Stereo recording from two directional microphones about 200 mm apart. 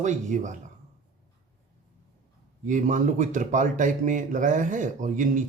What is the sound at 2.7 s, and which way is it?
Speech, 40° right (ahead or behind).